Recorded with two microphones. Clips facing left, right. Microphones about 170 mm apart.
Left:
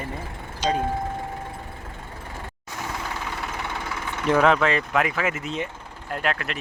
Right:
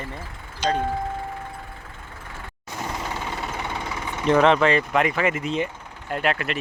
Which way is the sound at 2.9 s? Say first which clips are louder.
Right 1 dB; 25° right (ahead or behind).